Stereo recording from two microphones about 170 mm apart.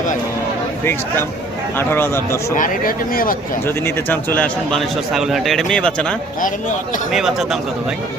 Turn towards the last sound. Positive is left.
turn(degrees=0)  # may be behind; listen again after turning